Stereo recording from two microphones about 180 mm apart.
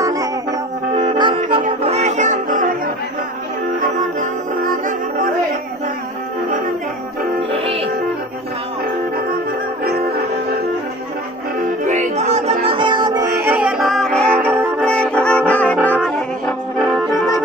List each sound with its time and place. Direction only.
0.0 s music: 20° right (ahead or behind)
0.9 s music: 30° right (ahead or behind)
1.6 s music: 40° right (ahead or behind)
4.2 s music: 45° right (ahead or behind)
7.5 s music: 35° right (ahead or behind)
9.8 s music: 60° right (ahead or behind)
11.8 s music: 40° right (ahead or behind); by 13.3 s 25° right (ahead or behind)
13.5 s music: 5° right (ahead or behind)
14.8 s brass instrument: 5° left (ahead or behind)